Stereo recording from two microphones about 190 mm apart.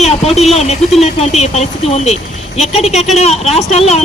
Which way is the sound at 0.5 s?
35° left (ahead or behind).